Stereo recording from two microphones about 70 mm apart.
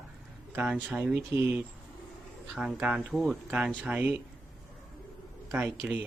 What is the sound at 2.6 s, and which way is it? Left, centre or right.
Speech, centre.